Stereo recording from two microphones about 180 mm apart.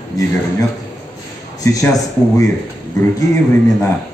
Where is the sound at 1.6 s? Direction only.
20° left (ahead or behind).